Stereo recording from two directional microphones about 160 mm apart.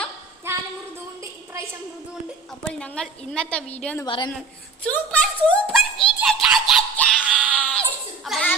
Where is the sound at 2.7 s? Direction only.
5° left (ahead or behind).